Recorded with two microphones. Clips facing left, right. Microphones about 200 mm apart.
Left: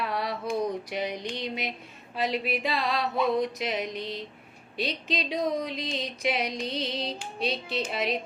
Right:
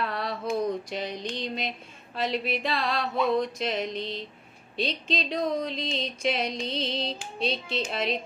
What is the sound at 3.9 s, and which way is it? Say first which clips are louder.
Music: right 1 dB; 20° right (ahead or behind).